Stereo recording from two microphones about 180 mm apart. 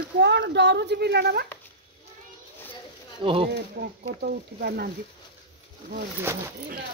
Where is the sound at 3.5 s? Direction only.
65° right (ahead or behind).